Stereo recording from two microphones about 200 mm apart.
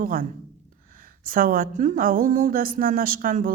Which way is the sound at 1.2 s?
45° right (ahead or behind).